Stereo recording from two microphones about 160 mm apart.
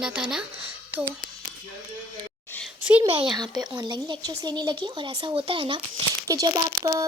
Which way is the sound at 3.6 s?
25° right (ahead or behind).